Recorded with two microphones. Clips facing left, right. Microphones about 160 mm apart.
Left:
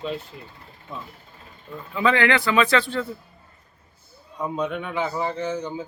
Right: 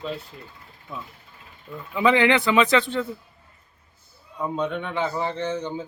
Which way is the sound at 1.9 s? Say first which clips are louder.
Right 2 dB; 20° right (ahead or behind).